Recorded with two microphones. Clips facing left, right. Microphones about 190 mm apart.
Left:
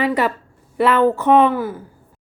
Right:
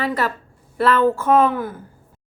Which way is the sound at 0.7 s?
20° left (ahead or behind).